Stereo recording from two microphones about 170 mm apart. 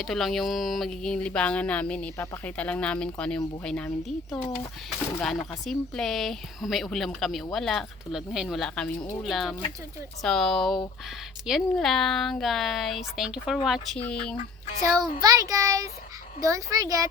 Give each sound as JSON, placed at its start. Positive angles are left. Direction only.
{"t": 0.0, "sound": "speech", "side_deg": 0}
{"t": 4.4, "sound": "speech", "side_deg": 25}
{"t": 5.2, "sound": "speech", "side_deg": 0}
{"t": 15.2, "sound": "child singing", "side_deg": -20}